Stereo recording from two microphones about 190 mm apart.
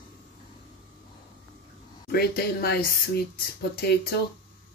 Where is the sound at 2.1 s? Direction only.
55° left (ahead or behind).